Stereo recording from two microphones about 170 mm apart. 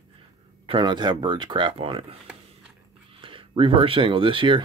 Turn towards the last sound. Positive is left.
turn(degrees=-30)  # may be behind; listen again after turning